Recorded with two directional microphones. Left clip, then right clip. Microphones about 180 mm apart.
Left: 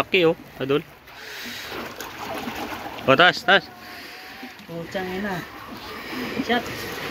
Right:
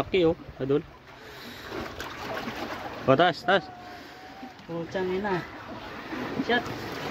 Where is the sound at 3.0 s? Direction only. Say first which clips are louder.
Left 6 dB; 5° right (ahead or behind).